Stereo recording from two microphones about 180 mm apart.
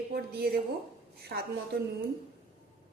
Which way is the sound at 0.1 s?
60° right (ahead or behind).